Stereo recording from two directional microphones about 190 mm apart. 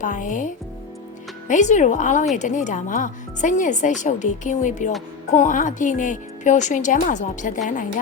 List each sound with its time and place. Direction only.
0.0 s speech: 40° left (ahead or behind)